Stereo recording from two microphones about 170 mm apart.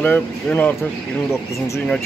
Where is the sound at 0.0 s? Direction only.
10° left (ahead or behind).